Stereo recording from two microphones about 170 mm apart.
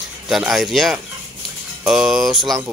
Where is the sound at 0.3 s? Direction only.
Centre (ahead or behind).